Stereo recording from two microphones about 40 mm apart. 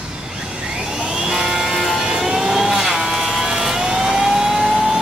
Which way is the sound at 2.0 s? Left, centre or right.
Centre.